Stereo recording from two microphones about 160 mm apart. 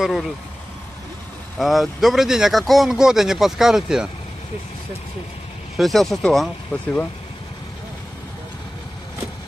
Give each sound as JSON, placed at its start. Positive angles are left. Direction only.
{"t": 0.0, "sound": "speech", "side_deg": 0}
{"t": 1.6, "sound": "speech", "side_deg": 0}
{"t": 5.8, "sound": "speech", "side_deg": 0}